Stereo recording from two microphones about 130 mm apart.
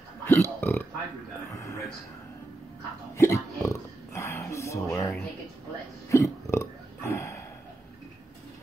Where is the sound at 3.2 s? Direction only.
20° left (ahead or behind).